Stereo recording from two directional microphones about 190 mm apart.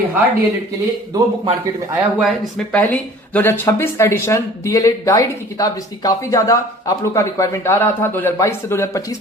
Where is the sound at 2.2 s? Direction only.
Centre (ahead or behind).